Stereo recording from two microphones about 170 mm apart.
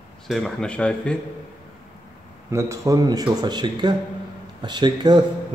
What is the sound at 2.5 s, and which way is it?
Speech, 15° right (ahead or behind).